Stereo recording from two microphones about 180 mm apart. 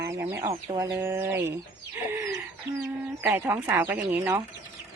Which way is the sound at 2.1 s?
15° right (ahead or behind).